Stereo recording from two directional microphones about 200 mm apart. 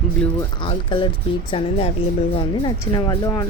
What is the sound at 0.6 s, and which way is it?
Speech, 25° left (ahead or behind).